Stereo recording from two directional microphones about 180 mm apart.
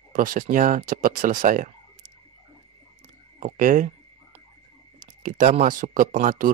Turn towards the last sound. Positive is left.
turn(degrees=-50)  # may be behind; listen again after turning